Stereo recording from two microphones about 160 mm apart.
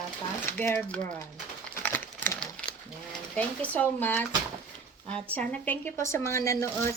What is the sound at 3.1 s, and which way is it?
Speech, 10° left (ahead or behind).